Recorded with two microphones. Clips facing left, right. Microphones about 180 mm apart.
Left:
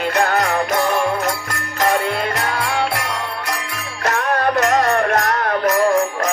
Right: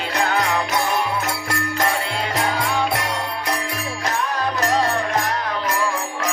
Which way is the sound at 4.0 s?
60° left (ahead or behind).